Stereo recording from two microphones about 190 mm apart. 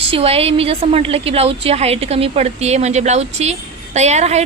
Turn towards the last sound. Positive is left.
turn(degrees=-35)  # may be behind; listen again after turning